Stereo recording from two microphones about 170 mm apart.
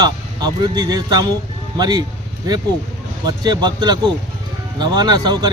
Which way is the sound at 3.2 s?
25° right (ahead or behind).